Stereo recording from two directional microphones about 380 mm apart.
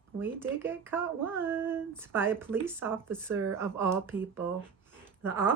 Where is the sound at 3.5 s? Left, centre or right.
Centre.